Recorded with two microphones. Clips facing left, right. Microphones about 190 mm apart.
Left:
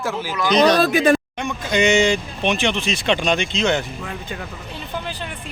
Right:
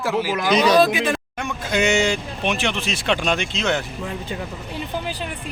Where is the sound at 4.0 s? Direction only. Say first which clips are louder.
Right 2 dB; 25° right (ahead or behind).